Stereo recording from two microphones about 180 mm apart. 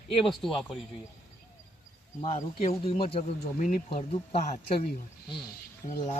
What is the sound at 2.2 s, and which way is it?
Speech, 35° left (ahead or behind).